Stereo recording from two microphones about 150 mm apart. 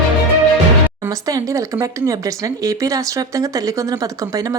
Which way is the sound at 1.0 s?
20° right (ahead or behind).